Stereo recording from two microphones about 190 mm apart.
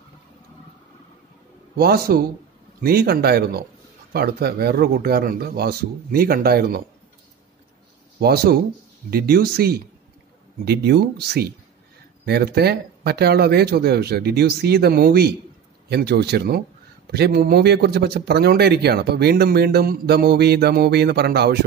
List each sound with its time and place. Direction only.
1.8 s speech: 55° right (ahead or behind)
8.2 s speech: 55° right (ahead or behind)